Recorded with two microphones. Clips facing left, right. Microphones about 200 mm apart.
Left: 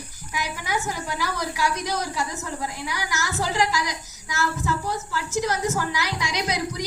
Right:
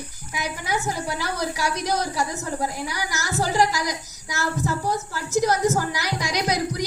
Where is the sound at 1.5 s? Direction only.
40° right (ahead or behind).